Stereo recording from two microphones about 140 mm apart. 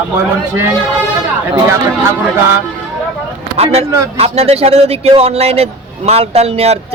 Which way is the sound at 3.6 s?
45° right (ahead or behind).